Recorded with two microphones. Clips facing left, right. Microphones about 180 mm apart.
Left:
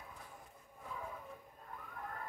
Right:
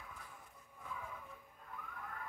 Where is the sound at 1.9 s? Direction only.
40° left (ahead or behind).